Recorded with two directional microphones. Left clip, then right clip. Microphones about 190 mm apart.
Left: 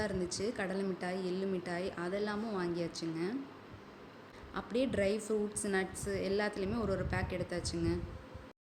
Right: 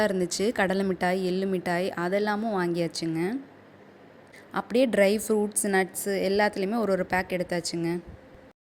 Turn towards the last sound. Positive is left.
turn(degrees=-40)  # may be behind; listen again after turning